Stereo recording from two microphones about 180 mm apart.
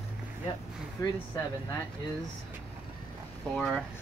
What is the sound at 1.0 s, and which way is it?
Speech, 20° left (ahead or behind).